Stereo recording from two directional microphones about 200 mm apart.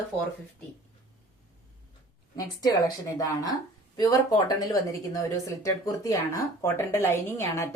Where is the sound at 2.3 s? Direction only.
15° left (ahead or behind).